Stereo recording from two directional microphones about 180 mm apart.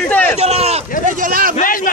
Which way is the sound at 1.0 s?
50° right (ahead or behind).